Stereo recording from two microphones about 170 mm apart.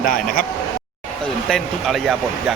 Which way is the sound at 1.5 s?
Centre (ahead or behind).